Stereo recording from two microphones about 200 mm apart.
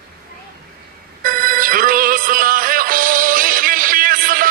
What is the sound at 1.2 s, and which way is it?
Music, 45° right (ahead or behind).